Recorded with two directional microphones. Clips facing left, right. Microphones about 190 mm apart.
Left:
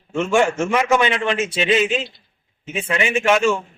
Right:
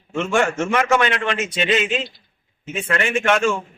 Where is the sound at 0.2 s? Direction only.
10° left (ahead or behind).